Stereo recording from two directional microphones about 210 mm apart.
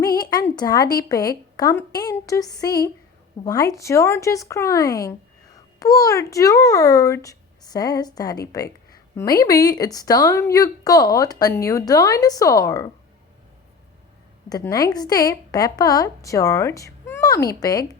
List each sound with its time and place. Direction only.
0.2 s a sound: 20° left (ahead or behind)
0.5 s speech: 20° left (ahead or behind)
14.5 s speech: 15° left (ahead or behind)